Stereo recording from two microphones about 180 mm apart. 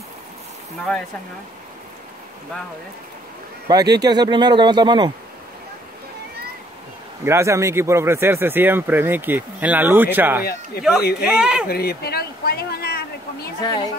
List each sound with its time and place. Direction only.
3.6 s speech: 20° right (ahead or behind)
7.2 s speech: 15° right (ahead or behind)
11.7 s a sound: 60° left (ahead or behind)
13.6 s a woman's voice: 25° left (ahead or behind)